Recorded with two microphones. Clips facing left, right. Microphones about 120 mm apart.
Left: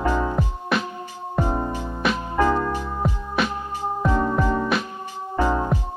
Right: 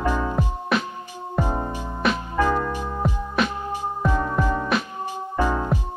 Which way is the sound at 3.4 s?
Centre (ahead or behind).